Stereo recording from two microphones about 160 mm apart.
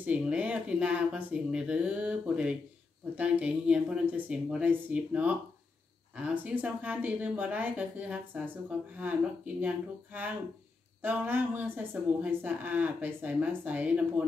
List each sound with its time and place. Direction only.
0.0 s speech: 10° right (ahead or behind)